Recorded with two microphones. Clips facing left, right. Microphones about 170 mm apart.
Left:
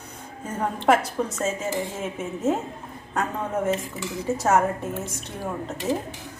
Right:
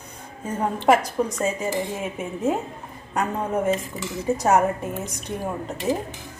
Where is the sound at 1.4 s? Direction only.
15° right (ahead or behind).